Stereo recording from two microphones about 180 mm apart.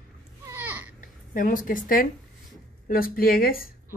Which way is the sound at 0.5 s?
10° right (ahead or behind).